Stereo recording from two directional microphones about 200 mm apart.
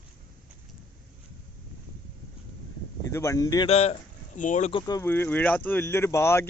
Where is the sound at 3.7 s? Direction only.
30° left (ahead or behind).